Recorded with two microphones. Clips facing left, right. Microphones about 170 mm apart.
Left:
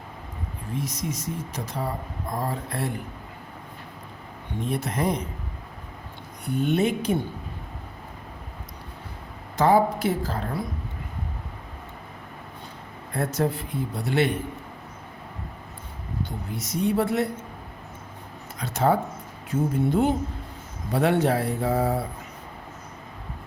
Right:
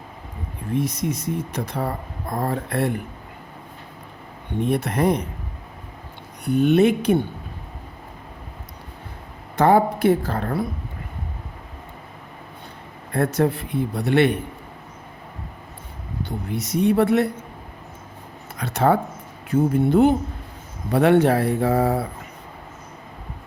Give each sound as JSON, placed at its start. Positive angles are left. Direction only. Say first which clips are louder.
{"t": 0.7, "sound": "speech", "louder": "right 7 dB", "side_deg": -60}
{"t": 4.6, "sound": "speech", "louder": "right 6 dB", "side_deg": -65}
{"t": 6.6, "sound": "speech", "louder": "right 7 dB", "side_deg": -70}
{"t": 9.6, "sound": "speech", "louder": "right 3 dB", "side_deg": -60}
{"t": 13.1, "sound": "speech", "louder": "right 5 dB", "side_deg": -65}
{"t": 16.5, "sound": "speech", "louder": "right 6 dB", "side_deg": -65}
{"t": 18.5, "sound": "a sound", "louder": "right 3 dB", "side_deg": -65}
{"t": 19.5, "sound": "speech", "louder": "right 5 dB", "side_deg": -65}